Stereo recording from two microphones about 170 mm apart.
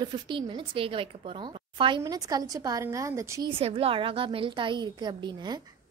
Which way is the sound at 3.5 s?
35° right (ahead or behind).